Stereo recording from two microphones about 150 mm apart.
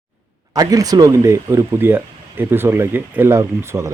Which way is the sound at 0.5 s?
25° right (ahead or behind).